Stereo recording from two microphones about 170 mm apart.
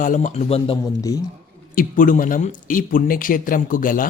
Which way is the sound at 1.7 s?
55° left (ahead or behind).